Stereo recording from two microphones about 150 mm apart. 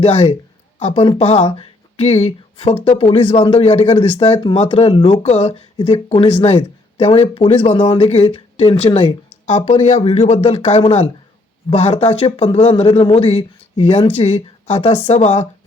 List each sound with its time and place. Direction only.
0.8 s speech: 35° left (ahead or behind)
6.6 s speech: 35° left (ahead or behind)